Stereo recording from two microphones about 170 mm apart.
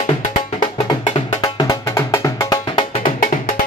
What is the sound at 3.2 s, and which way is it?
Music, 50° left (ahead or behind).